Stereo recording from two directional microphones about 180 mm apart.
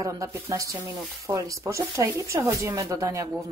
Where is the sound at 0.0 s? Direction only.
20° right (ahead or behind).